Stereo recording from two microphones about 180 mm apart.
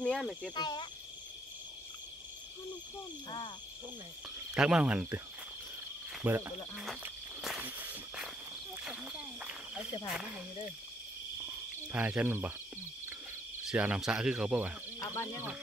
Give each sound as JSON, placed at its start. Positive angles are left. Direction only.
{"t": 0.0, "sound": "speech", "side_deg": 5}
{"t": 0.6, "sound": "speech", "side_deg": 25}
{"t": 4.6, "sound": "speech", "side_deg": -5}
{"t": 6.2, "sound": "speech", "side_deg": -10}
{"t": 7.4, "sound": "walk", "side_deg": -5}
{"t": 8.8, "sound": "speech", "side_deg": -5}
{"t": 11.9, "sound": "speech", "side_deg": -10}
{"t": 13.7, "sound": "speech", "side_deg": -5}
{"t": 15.0, "sound": "speech", "side_deg": 15}